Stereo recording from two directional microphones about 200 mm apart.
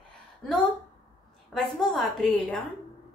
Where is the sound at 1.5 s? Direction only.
Centre (ahead or behind).